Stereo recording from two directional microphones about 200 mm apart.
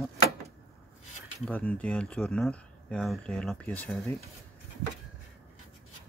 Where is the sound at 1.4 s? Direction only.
5° left (ahead or behind).